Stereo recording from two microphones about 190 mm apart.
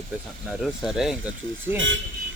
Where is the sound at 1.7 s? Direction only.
85° right.